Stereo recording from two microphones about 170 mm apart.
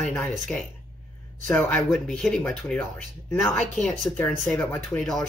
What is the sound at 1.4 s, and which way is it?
Speech, 10° left (ahead or behind).